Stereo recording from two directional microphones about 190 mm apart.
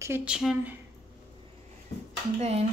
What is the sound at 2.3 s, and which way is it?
Speech, 35° right (ahead or behind).